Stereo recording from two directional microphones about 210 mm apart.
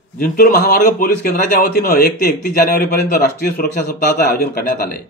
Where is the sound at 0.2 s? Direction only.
45° left (ahead or behind).